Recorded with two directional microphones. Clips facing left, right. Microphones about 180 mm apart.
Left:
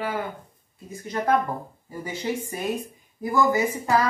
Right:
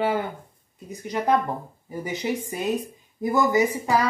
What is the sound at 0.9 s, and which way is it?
A woman's voice, 15° right (ahead or behind).